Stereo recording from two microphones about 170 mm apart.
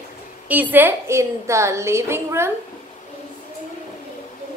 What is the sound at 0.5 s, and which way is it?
A woman's voice, 10° right (ahead or behind).